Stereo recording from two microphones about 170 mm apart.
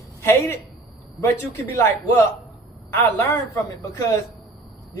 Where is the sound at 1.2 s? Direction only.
15° left (ahead or behind).